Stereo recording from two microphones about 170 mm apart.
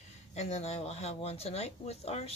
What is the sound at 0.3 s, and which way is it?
Speech, 40° left (ahead or behind).